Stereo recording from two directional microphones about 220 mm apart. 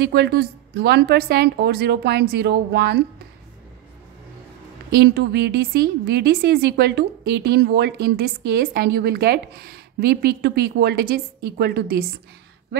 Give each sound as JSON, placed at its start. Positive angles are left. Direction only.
{"t": 0.0, "sound": "a woman's voice", "side_deg": -50}
{"t": 4.9, "sound": "a woman's voice", "side_deg": -50}